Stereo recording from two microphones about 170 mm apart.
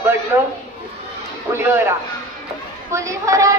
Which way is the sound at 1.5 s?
15° right (ahead or behind).